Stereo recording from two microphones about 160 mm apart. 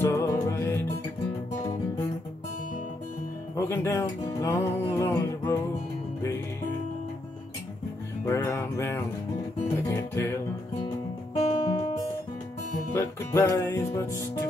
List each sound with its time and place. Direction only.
0.0 s music: 15° left (ahead or behind)
3.5 s music: 20° left (ahead or behind)
8.3 s music: 15° left (ahead or behind)
11.3 s music: 35° left (ahead or behind)
12.9 s music: 15° left (ahead or behind)